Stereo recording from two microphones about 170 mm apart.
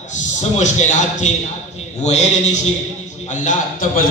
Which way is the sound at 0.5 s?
45° left (ahead or behind).